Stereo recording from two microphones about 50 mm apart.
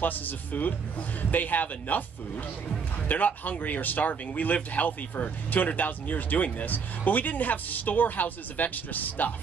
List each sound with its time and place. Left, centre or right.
0.0 s speech: left
3.1 s speech: left